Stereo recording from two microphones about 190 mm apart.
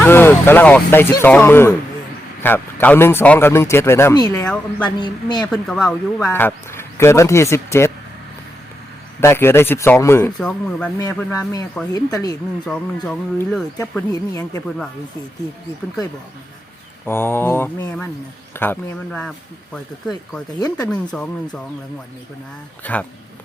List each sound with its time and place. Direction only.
0.0 s speech: 10° left (ahead or behind)
4.4 s speech: 5° left (ahead or behind)
4.9 s speech: 25° left (ahead or behind)
5.5 s speech: 5° left (ahead or behind)
9.2 s speech: 10° left (ahead or behind)
12.6 s speech: 5° left (ahead or behind)
14.1 s speech: 20° left (ahead or behind)
17.1 s speech: 10° left (ahead or behind)
20.6 s speech: 20° left (ahead or behind)
20.9 s speech: 5° left (ahead or behind)
22.8 s speech: 10° left (ahead or behind)